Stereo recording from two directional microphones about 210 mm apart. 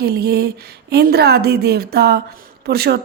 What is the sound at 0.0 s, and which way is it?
Speech, 50° right (ahead or behind).